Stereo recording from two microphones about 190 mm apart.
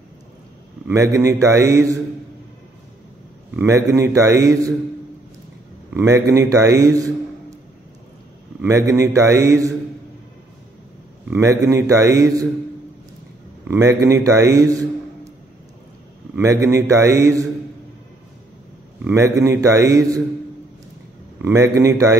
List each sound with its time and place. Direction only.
0.8 s a man's voice: 15° right (ahead or behind)
3.5 s a man's voice: 15° right (ahead or behind)
5.9 s a man's voice: 15° right (ahead or behind)
8.6 s a man's voice: 15° right (ahead or behind)
11.2 s a man's voice: 15° right (ahead or behind)
13.7 s a man's voice: 15° right (ahead or behind)
16.3 s a man's voice: 15° right (ahead or behind)
19.1 s a man's voice: 15° right (ahead or behind)
21.4 s a man's voice: 15° right (ahead or behind)